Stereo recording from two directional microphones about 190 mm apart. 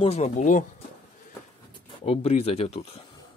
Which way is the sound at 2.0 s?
30° left (ahead or behind).